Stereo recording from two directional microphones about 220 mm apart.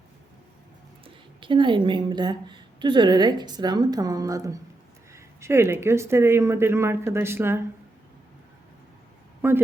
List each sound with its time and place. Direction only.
1.0 s a woman's voice: 20° right (ahead or behind)
9.4 s speech: 10° right (ahead or behind)